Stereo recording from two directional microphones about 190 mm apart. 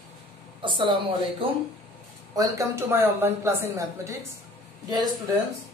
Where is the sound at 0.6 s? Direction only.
25° right (ahead or behind).